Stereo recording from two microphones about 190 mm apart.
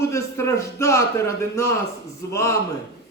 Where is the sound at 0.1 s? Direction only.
15° left (ahead or behind).